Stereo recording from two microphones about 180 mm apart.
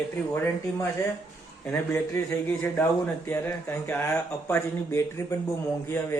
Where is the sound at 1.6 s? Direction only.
10° left (ahead or behind).